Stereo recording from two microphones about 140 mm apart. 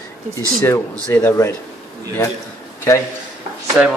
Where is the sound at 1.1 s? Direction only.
10° left (ahead or behind).